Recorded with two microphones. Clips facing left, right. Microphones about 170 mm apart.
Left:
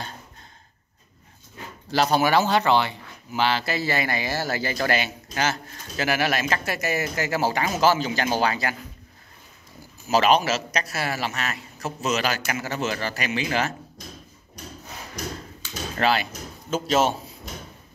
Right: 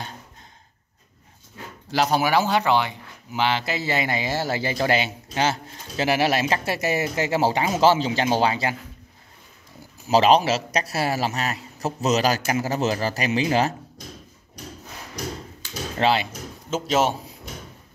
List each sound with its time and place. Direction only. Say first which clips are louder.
1.9 s speech: even; 10° right (ahead or behind)
10.0 s a man's voice: right 3 dB; 30° right (ahead or behind)
16.0 s speech: right 2 dB; 25° right (ahead or behind)